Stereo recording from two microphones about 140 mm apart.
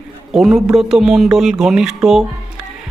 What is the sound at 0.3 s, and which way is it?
Speech, 5° right (ahead or behind).